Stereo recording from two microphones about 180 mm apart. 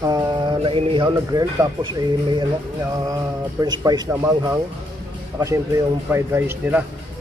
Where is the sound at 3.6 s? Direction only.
20° right (ahead or behind).